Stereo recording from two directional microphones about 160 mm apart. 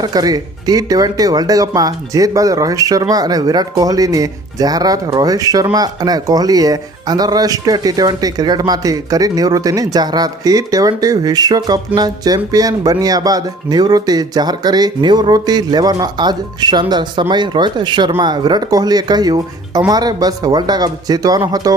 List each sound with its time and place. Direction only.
0.0 s speech: 25° right (ahead or behind)